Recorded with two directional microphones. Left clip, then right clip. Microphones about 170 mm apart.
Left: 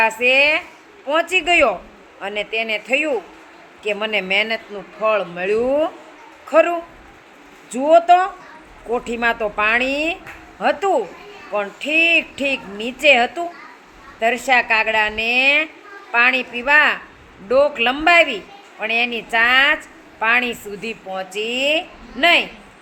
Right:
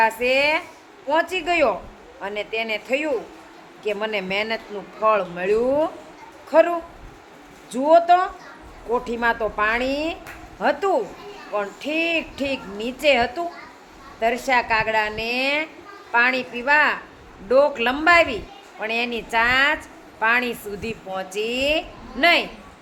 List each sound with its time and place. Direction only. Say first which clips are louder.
0.0 s speech: left 4 dB; 15° left (ahead or behind)